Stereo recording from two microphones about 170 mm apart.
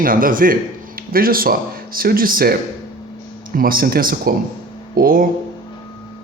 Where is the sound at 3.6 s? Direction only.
60° right (ahead or behind).